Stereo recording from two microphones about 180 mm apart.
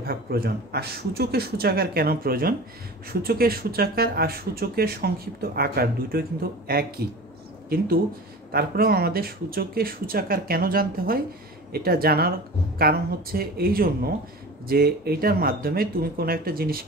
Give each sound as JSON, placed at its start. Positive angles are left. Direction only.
{"t": 0.0, "sound": "speech", "side_deg": -55}
{"t": 8.5, "sound": "speech", "side_deg": -55}